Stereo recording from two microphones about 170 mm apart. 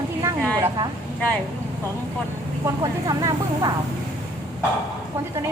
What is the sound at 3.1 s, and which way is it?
Speech, 20° right (ahead or behind).